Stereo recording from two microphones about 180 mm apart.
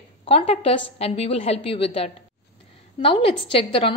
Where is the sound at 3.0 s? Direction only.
30° left (ahead or behind).